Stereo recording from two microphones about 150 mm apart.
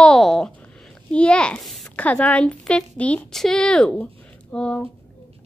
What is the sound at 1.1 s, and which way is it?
A woman's voice, 5° left (ahead or behind).